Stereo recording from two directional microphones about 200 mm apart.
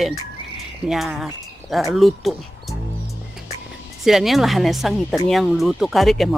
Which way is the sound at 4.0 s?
Centre (ahead or behind).